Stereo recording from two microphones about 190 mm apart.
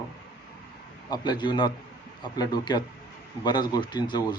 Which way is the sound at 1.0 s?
20° left (ahead or behind).